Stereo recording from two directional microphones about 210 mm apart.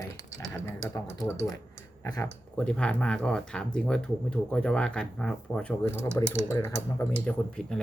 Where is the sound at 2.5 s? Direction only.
5° left (ahead or behind).